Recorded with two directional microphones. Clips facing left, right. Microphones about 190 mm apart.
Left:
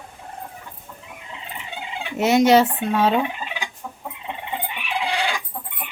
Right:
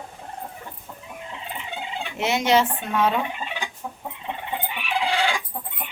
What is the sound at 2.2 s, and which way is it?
Speech, 40° left (ahead or behind).